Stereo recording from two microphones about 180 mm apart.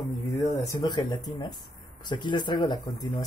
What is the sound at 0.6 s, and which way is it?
Speech, 20° left (ahead or behind).